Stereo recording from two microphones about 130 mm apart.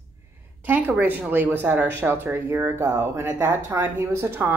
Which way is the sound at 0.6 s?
15° right (ahead or behind).